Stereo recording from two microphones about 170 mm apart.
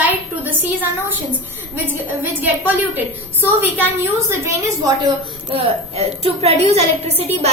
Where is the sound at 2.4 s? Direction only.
10° right (ahead or behind).